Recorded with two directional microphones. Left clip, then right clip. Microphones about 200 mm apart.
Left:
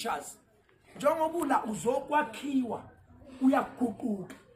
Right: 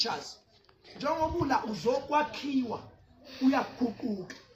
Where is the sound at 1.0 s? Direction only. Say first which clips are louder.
Left 2 dB; 5° left (ahead or behind).